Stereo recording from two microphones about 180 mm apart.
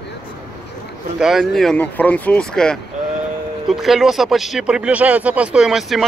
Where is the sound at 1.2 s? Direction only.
Centre (ahead or behind).